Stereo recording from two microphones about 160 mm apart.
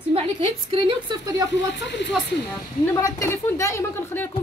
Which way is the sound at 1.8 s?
90° left.